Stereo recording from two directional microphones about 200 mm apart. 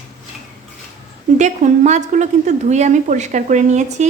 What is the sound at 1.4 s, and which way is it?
A woman's voice, 35° right (ahead or behind).